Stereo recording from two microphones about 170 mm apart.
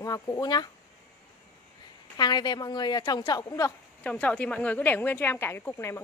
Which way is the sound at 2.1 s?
25° left (ahead or behind).